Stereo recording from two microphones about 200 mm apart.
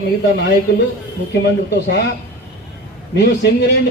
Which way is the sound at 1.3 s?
55° left (ahead or behind).